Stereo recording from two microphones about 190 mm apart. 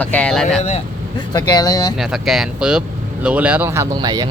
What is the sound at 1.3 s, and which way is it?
Speech, 20° left (ahead or behind).